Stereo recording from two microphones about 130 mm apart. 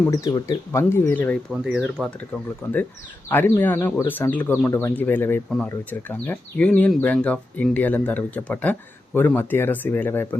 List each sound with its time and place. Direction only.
0.1 s speech: 30° left (ahead or behind); by 1.4 s 15° left (ahead or behind)
1.5 s speech: 5° right (ahead or behind)
2.6 s speech: 20° left (ahead or behind)